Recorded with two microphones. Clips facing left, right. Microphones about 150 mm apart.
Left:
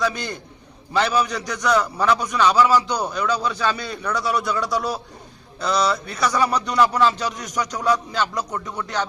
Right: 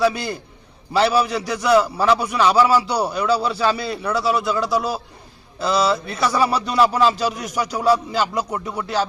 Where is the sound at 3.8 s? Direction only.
5° right (ahead or behind).